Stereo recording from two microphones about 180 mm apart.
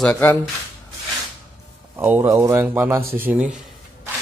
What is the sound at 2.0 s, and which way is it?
Speech, 10° right (ahead or behind).